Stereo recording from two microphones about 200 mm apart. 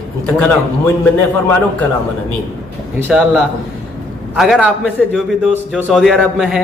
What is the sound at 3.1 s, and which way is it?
A man's voice, 10° right (ahead or behind).